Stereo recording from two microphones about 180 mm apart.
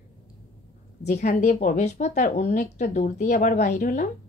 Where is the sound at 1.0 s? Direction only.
40° left (ahead or behind).